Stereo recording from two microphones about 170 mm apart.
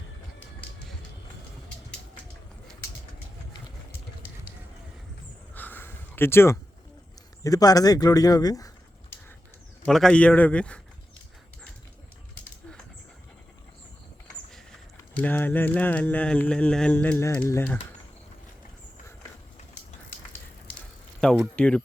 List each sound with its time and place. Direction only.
5.5 s a sound: 10° left (ahead or behind)
7.4 s speech: 20° left (ahead or behind)
9.8 s speech: centre (ahead or behind)
15.1 s speech: 10° left (ahead or behind)
21.2 s speech: 5° left (ahead or behind)